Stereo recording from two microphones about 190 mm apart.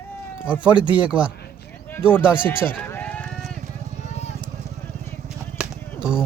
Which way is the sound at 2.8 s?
10° left (ahead or behind).